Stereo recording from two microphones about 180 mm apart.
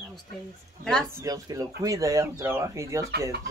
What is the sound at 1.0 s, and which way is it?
Speech, 15° right (ahead or behind).